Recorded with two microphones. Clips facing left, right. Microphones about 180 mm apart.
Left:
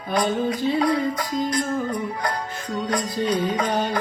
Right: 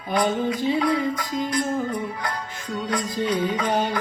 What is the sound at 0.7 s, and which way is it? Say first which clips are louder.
Music: left 1 dB; 45° left (ahead or behind).